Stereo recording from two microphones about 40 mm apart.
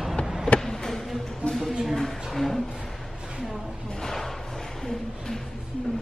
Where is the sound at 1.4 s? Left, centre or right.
Left.